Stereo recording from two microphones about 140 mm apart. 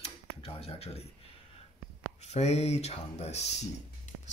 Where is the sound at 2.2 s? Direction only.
50° left (ahead or behind).